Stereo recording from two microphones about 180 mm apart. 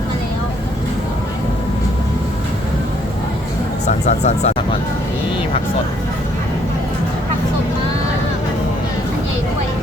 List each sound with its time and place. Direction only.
3.8 s speech: 40° left (ahead or behind)